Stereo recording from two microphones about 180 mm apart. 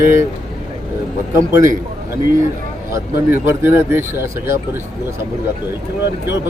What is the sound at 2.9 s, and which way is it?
Speech, 10° right (ahead or behind).